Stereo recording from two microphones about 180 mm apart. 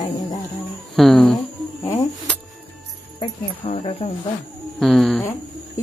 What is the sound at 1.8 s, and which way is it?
Music, 20° left (ahead or behind).